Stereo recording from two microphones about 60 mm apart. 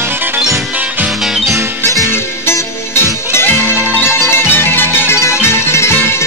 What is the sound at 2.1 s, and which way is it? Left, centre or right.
Music, left.